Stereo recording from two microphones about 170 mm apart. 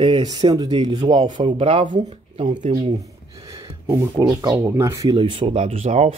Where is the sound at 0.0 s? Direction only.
30° right (ahead or behind).